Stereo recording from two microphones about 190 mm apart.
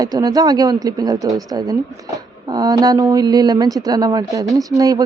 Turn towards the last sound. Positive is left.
turn(degrees=-20)  # may be behind; listen again after turning